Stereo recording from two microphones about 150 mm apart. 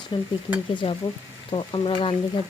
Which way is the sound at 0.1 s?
30° left (ahead or behind).